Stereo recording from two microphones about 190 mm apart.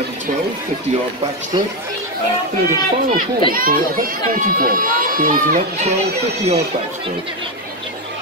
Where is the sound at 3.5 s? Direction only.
50° right (ahead or behind).